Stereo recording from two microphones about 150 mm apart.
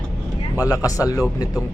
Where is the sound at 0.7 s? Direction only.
20° left (ahead or behind).